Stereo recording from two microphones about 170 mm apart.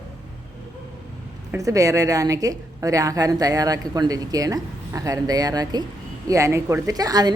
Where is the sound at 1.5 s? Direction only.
20° right (ahead or behind).